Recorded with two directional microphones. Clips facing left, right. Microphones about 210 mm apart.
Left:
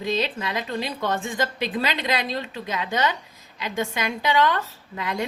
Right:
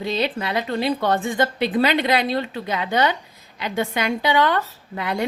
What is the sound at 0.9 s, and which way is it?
A woman's voice, 60° right (ahead or behind).